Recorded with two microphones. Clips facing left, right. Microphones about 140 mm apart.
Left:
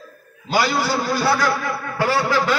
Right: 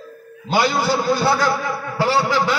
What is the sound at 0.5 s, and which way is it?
A man's voice, 25° right (ahead or behind).